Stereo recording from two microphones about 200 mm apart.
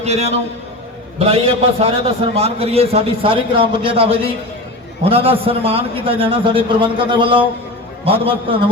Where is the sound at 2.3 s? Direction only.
30° right (ahead or behind).